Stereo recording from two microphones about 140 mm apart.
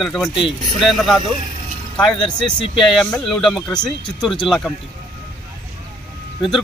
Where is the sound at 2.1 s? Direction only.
35° left (ahead or behind).